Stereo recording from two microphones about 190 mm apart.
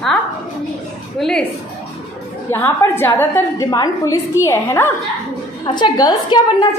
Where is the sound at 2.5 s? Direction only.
10° left (ahead or behind).